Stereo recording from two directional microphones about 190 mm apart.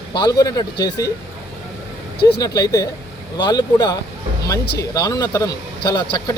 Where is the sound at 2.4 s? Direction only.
20° left (ahead or behind).